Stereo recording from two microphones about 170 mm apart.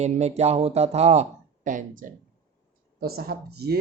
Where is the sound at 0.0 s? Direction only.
40° right (ahead or behind).